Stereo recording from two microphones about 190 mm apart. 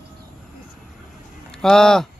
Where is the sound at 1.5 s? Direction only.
5° left (ahead or behind).